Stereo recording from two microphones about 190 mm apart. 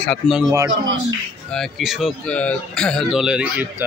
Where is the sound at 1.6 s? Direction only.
Centre (ahead or behind).